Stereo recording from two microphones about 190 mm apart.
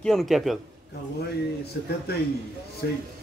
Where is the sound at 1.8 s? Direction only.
55° left (ahead or behind).